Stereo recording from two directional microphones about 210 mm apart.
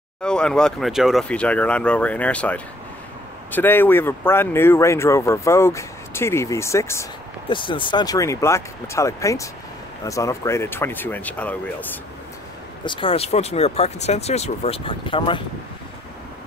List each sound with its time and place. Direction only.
0.2 s speech: 5° left (ahead or behind)
12.8 s speech: 25° left (ahead or behind)